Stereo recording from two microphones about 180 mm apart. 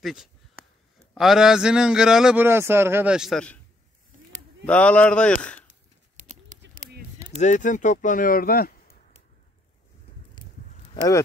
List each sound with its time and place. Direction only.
0.0 s a man's voice: 5° right (ahead or behind)
4.6 s speech: 5° left (ahead or behind)
6.5 s a sound: 45° right (ahead or behind)
7.3 s speech: 45° left (ahead or behind)